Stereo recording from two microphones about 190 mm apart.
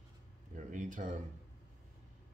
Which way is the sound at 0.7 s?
40° right (ahead or behind).